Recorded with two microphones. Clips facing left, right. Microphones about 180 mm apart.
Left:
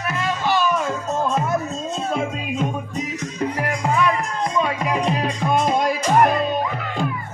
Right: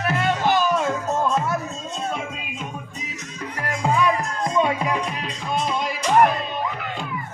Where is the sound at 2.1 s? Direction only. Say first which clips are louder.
Left 8 dB; 40° left (ahead or behind).